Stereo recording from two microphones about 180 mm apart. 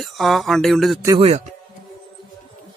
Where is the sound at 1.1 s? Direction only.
35° right (ahead or behind).